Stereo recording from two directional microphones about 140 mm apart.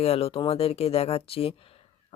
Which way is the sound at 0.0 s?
45° left (ahead or behind).